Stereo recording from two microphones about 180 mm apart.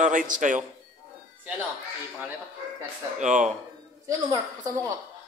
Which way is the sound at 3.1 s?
40° right (ahead or behind).